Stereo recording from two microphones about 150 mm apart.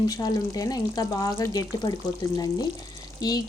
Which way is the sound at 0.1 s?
25° left (ahead or behind).